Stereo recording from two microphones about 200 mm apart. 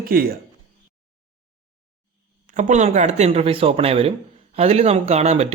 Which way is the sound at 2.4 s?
40° right (ahead or behind).